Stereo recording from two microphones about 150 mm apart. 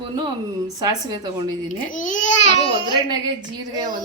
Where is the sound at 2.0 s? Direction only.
55° left (ahead or behind).